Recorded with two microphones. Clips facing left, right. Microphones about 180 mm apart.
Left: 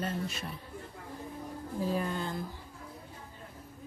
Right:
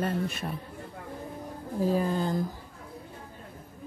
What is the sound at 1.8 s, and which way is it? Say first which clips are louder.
Speech: right 7 dB; 35° right (ahead or behind).